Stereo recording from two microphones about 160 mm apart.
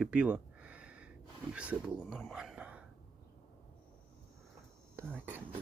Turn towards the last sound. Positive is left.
turn(degrees=-10)  # may be behind; listen again after turning